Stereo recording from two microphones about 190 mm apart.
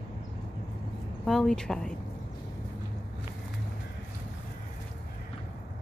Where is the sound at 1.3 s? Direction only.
Centre (ahead or behind).